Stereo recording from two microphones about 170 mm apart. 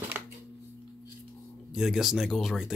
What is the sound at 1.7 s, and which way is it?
Speech, centre (ahead or behind).